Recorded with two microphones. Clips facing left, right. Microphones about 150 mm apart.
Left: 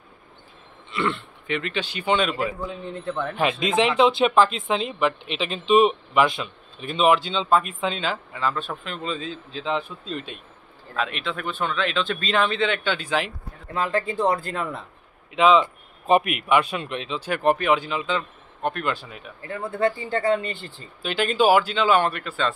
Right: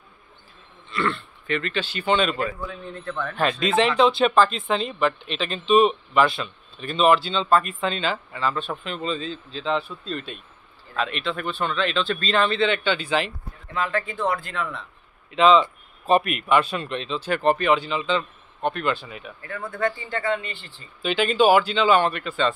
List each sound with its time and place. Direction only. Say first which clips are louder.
0.9 s speech: even; 20° left (ahead or behind)
2.6 s a man's voice: left 3 dB; 20° left (ahead or behind)
3.4 s speech: right 1 dB; 5° left (ahead or behind)
3.9 s a man's voice: left 2 dB; 20° left (ahead or behind)
13.7 s speech: left 2 dB; 35° left (ahead or behind)
15.3 s speech: right 1 dB; 10° left (ahead or behind)
19.4 s speech: left 3 dB; 30° left (ahead or behind)
21.0 s speech: right 2 dB; 5° left (ahead or behind)